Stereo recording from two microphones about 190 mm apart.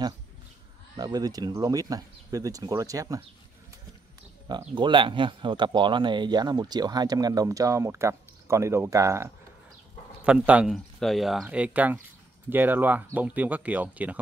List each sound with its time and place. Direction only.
0.9 s speech: 20° right (ahead or behind)
4.5 s speech: 25° right (ahead or behind); by 14.2 s 10° right (ahead or behind)